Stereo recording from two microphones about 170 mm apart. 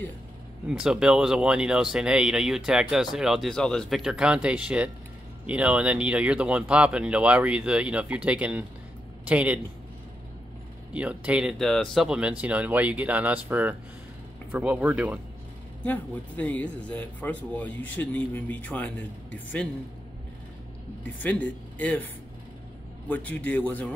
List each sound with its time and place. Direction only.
0.7 s speech: 5° right (ahead or behind)
10.9 s speech: 5° right (ahead or behind)
15.8 s speech: 10° left (ahead or behind)
17.6 s speech: 90° left
18.3 s speech: 10° left (ahead or behind)
21.0 s speech: 10° left (ahead or behind)